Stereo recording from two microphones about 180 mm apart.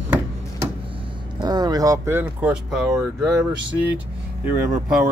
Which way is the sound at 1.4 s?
20° right (ahead or behind).